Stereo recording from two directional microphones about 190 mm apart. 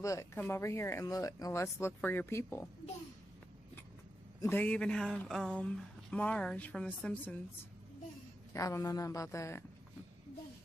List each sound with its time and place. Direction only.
0.0 s speech: 15° left (ahead or behind)
4.4 s speech: 10° left (ahead or behind)
8.5 s speech: 15° left (ahead or behind)